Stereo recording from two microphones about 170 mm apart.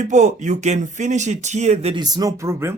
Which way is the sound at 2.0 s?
25° right (ahead or behind).